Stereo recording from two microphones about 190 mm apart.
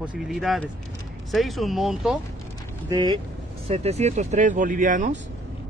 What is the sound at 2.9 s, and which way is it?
Speech, 20° right (ahead or behind).